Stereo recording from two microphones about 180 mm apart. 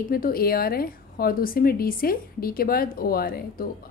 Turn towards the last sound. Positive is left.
turn(degrees=55)  # may be behind; listen again after turning